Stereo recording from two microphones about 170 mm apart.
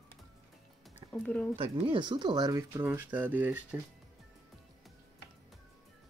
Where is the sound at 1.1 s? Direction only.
5° left (ahead or behind).